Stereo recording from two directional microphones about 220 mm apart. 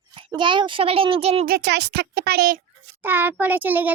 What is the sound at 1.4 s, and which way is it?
A child's voice, 45° right (ahead or behind).